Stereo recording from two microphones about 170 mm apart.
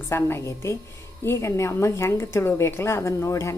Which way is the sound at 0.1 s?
15° left (ahead or behind).